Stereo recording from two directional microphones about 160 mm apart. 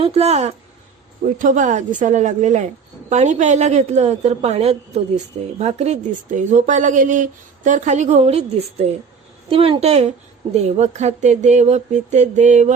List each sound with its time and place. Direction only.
0.0 s a woman's voice: 40° right (ahead or behind)
1.4 s a woman's voice: 55° right (ahead or behind)